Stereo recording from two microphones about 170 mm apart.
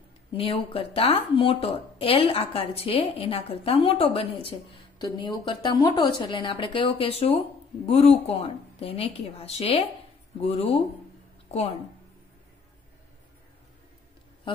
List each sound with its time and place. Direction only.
0.4 s a woman's voice: 35° left (ahead or behind)